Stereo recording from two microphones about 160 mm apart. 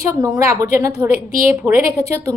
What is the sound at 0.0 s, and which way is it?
A woman's voice, 20° right (ahead or behind).